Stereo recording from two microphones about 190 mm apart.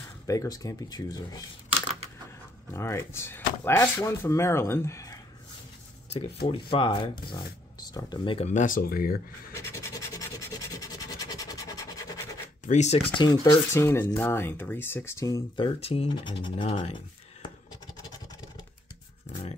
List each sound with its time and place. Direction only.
0.3 s speech: 15° left (ahead or behind)
2.7 s speech: 15° left (ahead or behind)
6.1 s speech: 25° left (ahead or behind); by 9.2 s 50° left (ahead or behind)
9.5 s scratch: 15° left (ahead or behind)
12.6 s speech: 35° left (ahead or behind)
13.3 s speech: 15° left (ahead or behind)
15.6 s speech: 30° left (ahead or behind)
17.9 s vehicle: 20° left (ahead or behind)